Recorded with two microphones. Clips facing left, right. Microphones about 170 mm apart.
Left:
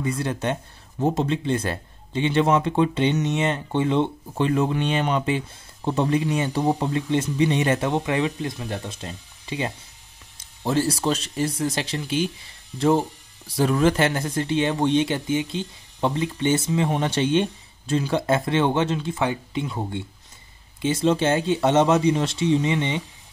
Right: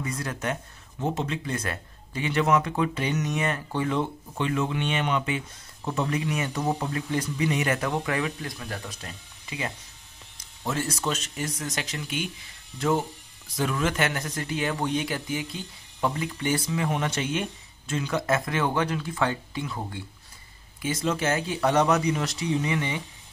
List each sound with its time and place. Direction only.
0.0 s speech: 30° left (ahead or behind)
4.4 s speech: 35° left (ahead or behind)